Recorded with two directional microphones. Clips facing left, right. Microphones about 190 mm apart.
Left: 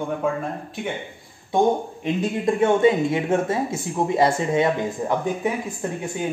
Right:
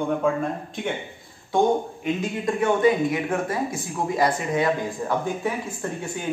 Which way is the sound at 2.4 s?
25° left (ahead or behind).